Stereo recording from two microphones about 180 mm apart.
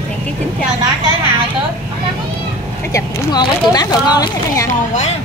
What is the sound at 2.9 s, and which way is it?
Speech, 20° left (ahead or behind).